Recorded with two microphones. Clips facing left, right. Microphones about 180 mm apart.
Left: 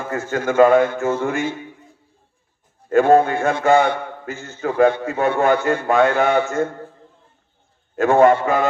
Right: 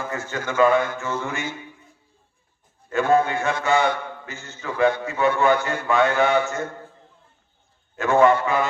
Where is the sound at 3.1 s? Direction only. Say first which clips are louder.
Left 5 dB; 55° left (ahead or behind).